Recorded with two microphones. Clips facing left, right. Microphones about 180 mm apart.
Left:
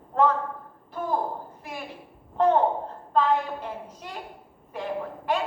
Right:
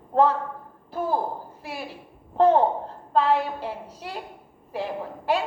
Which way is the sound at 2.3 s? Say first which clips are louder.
Right 3 dB; 35° right (ahead or behind).